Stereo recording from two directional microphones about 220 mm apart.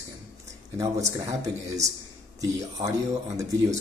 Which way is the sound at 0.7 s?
15° right (ahead or behind).